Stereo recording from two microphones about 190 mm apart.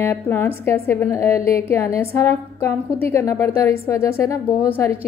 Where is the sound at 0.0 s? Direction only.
10° left (ahead or behind).